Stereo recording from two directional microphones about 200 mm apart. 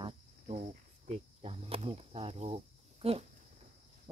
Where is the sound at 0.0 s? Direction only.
35° right (ahead or behind).